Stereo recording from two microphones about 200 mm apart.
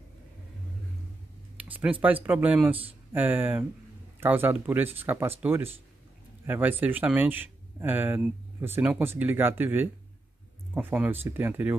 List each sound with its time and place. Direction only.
1.6 s speech: 10° right (ahead or behind)